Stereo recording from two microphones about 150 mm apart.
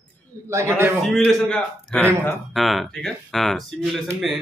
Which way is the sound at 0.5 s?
20° right (ahead or behind).